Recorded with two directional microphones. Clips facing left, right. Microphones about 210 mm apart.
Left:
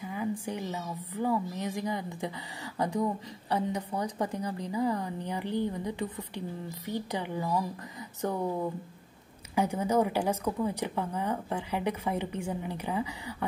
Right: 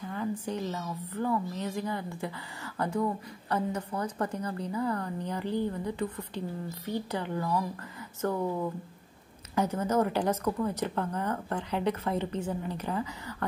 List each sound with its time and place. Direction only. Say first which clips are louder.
0.0 s a woman's voice: even; 10° left (ahead or behind)